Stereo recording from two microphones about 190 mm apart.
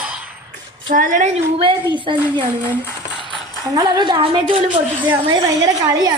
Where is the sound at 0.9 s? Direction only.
45° right (ahead or behind).